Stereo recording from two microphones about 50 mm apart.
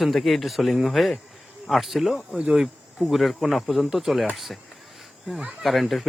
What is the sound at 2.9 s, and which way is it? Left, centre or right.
Speech, centre.